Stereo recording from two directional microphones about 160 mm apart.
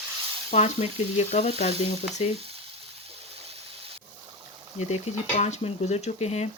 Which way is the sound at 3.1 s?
40° right (ahead or behind).